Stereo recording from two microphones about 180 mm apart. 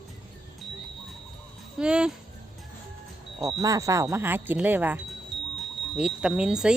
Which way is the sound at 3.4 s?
20° right (ahead or behind).